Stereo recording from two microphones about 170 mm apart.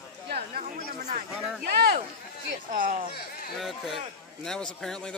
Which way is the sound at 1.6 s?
70° right (ahead or behind).